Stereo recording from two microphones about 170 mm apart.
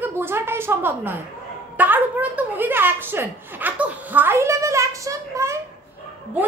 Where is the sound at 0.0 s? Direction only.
15° right (ahead or behind).